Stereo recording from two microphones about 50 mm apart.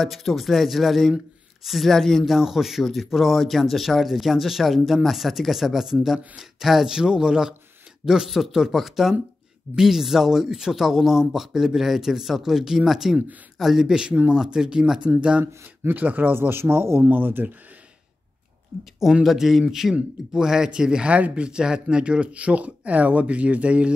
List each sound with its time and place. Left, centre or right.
0.0 s speech: centre
2.2 s speech: centre; by 15.4 s right
15.9 s speech: right
17.1 s speech: right
19.2 s speech: centre; by 23.9 s right